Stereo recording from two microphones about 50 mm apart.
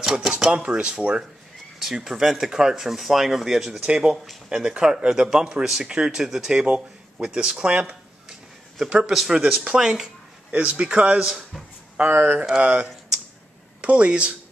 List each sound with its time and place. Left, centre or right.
0.0 s speech: centre
1.8 s speech: centre
3.7 s speech: centre
8.3 s a sound: centre
9.3 s speech: centre
12.1 s speech: right
13.7 s speech: right